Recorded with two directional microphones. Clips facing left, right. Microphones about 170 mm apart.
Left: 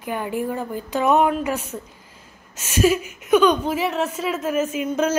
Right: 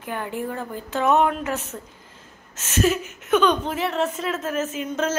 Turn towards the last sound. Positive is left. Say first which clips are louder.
# left 4 dB
turn(degrees=10)  # may be behind; listen again after turning